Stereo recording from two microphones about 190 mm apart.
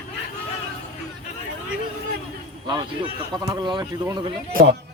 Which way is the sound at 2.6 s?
20° right (ahead or behind).